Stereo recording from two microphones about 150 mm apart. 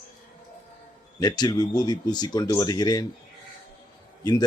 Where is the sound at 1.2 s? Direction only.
30° left (ahead or behind).